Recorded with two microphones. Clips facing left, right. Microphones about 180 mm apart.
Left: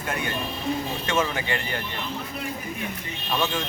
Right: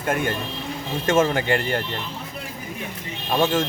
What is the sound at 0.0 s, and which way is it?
Speech, 50° right (ahead or behind).